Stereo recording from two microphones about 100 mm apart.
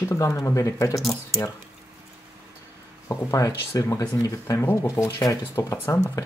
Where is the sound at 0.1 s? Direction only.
30° left (ahead or behind).